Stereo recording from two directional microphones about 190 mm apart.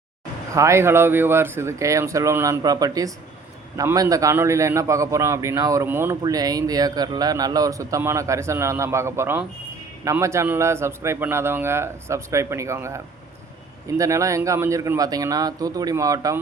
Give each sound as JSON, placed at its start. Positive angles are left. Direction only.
{"t": 0.5, "sound": "a man's voice", "side_deg": -15}